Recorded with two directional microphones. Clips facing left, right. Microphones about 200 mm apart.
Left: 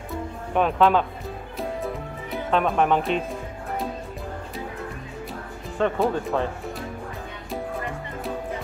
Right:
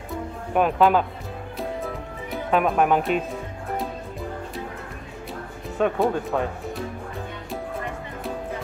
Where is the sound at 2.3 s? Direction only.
5° right (ahead or behind).